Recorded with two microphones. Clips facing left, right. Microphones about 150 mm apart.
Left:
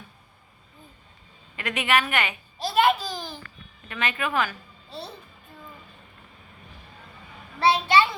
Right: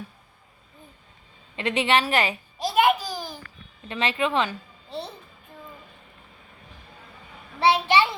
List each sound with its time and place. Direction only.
1.5 s a woman's voice: 30° right (ahead or behind)
2.6 s a sound: 15° right (ahead or behind)
3.8 s a woman's voice: 30° right (ahead or behind)
7.6 s a woman's voice: 25° right (ahead or behind)